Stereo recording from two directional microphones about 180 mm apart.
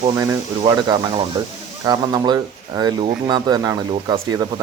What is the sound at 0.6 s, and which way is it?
Speech, 25° right (ahead or behind).